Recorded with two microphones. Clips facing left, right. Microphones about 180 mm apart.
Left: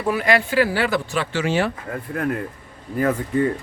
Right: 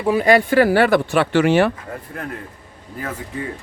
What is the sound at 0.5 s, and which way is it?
Speech, 55° right (ahead or behind).